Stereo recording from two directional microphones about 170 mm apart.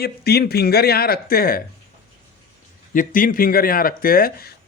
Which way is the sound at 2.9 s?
55° left (ahead or behind).